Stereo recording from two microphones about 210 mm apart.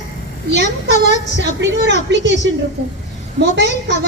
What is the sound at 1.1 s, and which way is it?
A woman's voice, 55° right (ahead or behind).